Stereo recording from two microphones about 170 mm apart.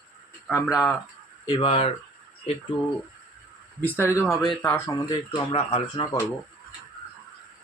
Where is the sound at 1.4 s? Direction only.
30° left (ahead or behind).